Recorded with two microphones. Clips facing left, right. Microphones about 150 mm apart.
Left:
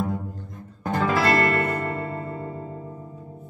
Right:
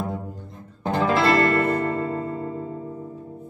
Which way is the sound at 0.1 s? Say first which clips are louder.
Left 1 dB; 25° right (ahead or behind).